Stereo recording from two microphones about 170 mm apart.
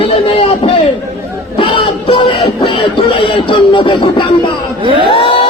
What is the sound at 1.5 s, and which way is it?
Music, 30° left (ahead or behind).